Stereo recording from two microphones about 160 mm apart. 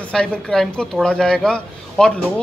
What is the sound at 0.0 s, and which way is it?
A woman's voice, 5° left (ahead or behind).